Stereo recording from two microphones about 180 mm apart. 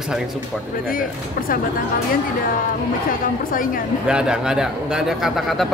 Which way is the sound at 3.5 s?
50° left (ahead or behind).